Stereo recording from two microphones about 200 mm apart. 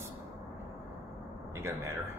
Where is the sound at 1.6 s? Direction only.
15° right (ahead or behind).